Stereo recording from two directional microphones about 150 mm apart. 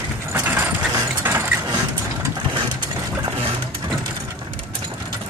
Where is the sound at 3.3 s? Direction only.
40° right (ahead or behind).